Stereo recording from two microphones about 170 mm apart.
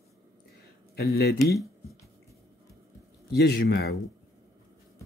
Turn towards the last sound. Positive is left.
turn(degrees=70)  # may be behind; listen again after turning